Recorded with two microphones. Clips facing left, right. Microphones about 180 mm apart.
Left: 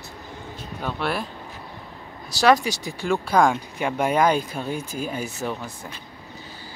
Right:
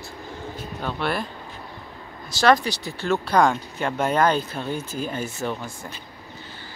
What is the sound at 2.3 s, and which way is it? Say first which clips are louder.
Speech: left 1 dB; 35° left (ahead or behind).